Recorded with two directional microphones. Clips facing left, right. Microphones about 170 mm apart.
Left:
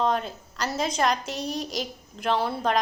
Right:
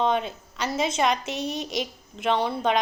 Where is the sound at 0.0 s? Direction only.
Centre (ahead or behind).